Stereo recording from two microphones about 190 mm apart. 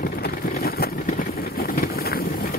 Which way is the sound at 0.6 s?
55° left (ahead or behind).